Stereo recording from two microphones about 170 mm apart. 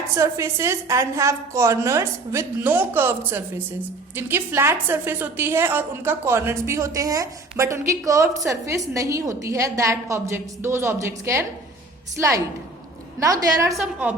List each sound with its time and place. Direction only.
0.2 s a woman's voice: 15° right (ahead or behind)
13.1 s a woman's voice: 20° right (ahead or behind)
13.7 s a woman's voice: 5° right (ahead or behind)